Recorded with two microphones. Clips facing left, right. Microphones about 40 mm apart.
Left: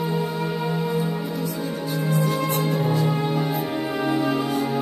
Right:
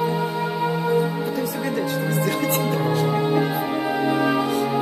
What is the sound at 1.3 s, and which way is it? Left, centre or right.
Music, right.